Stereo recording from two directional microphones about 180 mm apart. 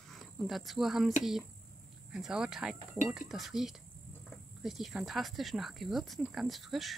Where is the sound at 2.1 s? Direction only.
5° right (ahead or behind).